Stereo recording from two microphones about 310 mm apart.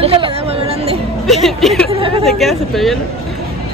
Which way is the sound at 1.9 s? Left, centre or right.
Centre.